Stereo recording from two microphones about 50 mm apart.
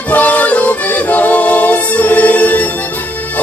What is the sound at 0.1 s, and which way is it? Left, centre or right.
Music, left.